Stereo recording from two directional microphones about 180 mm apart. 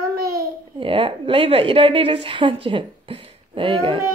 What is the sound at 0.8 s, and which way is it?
A woman's voice, 30° right (ahead or behind).